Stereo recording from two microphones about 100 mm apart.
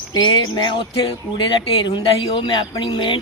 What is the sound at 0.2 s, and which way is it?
Speech, 45° left (ahead or behind).